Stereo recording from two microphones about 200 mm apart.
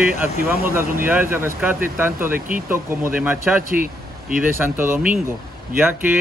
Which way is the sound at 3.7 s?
45° right (ahead or behind).